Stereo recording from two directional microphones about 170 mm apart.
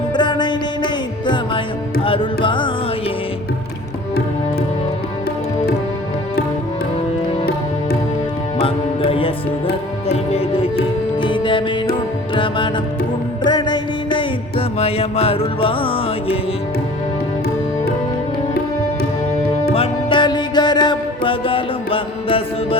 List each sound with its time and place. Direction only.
0.1 s music: 25° left (ahead or behind)
2.0 s carnatic music: 30° left (ahead or behind)
8.5 s music: 35° left (ahead or behind)
19.7 s music: 30° left (ahead or behind)